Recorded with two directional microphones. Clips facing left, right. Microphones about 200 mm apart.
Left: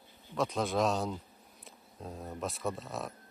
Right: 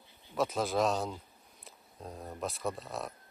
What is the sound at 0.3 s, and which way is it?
Speech, 5° right (ahead or behind).